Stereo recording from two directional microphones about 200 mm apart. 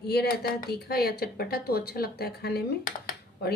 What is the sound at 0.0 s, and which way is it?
Speech, 55° left (ahead or behind).